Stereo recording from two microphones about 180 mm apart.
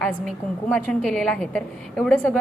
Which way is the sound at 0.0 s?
5° left (ahead or behind).